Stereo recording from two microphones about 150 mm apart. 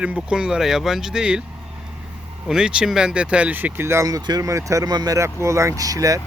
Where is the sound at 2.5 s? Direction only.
5° right (ahead or behind); by 6.2 s 25° right (ahead or behind).